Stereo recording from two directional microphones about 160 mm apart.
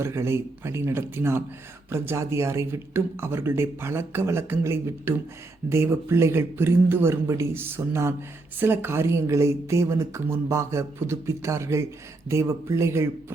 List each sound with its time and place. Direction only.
0.0 s speech: 15° right (ahead or behind)